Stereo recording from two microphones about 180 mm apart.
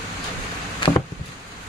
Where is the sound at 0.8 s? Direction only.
25° left (ahead or behind).